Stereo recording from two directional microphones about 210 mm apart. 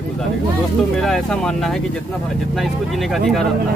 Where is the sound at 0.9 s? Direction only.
Centre (ahead or behind).